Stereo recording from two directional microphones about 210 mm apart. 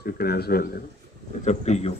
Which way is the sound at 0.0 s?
45° left (ahead or behind).